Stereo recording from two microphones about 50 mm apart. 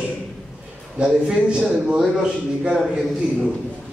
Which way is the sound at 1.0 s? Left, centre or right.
Centre.